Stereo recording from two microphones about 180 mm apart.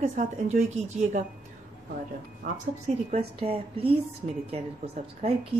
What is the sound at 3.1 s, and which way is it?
Speech, 35° right (ahead or behind).